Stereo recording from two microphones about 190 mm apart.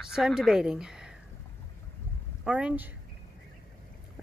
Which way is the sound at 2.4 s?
5° right (ahead or behind).